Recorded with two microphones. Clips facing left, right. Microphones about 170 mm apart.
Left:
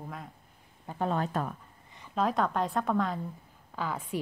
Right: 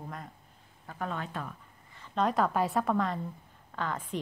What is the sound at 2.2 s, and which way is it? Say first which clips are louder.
A woman's voice: right 1 dB; centre (ahead or behind).